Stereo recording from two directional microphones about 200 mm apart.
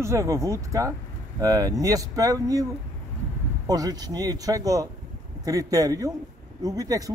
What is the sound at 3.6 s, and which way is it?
Speech, 20° right (ahead or behind).